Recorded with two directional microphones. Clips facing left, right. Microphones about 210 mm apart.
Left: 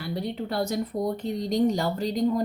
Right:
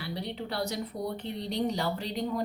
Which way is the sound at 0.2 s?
45° left (ahead or behind).